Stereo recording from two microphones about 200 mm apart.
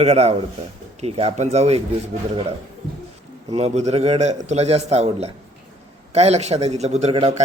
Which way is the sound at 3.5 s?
35° right (ahead or behind).